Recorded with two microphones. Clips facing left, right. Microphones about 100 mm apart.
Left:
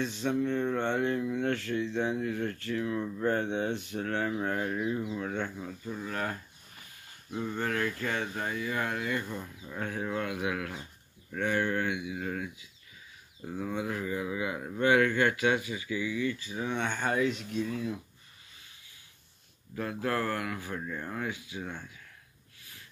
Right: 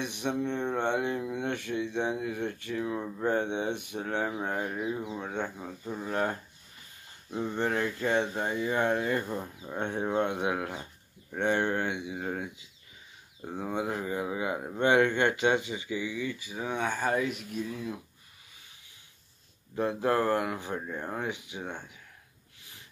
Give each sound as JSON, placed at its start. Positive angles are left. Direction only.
{"t": 0.0, "sound": "speech", "side_deg": -15}
{"t": 19.7, "sound": "speech", "side_deg": -25}